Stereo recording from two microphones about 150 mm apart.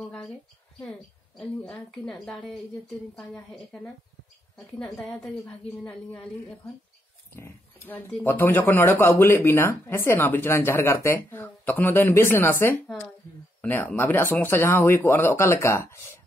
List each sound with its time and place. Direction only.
1.4 s a woman's voice: 5° left (ahead or behind)
7.3 s speech: 15° left (ahead or behind)